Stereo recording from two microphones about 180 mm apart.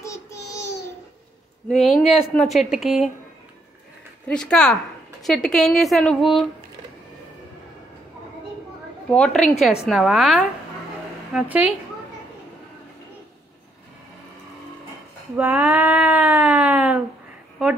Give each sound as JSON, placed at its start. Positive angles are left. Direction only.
{"t": 0.0, "sound": "a sound", "side_deg": 15}
{"t": 1.7, "sound": "speech", "side_deg": 0}
{"t": 4.3, "sound": "speech", "side_deg": 5}
{"t": 9.1, "sound": "a woman's voice", "side_deg": 5}
{"t": 15.3, "sound": "speech", "side_deg": -10}